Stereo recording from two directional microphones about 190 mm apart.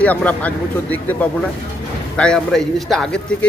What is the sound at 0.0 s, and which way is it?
A man's voice, 10° left (ahead or behind).